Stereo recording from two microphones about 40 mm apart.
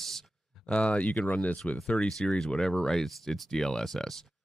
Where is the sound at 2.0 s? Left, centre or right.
Centre.